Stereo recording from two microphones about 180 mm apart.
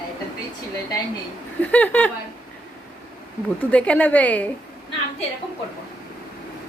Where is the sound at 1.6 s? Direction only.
10° left (ahead or behind).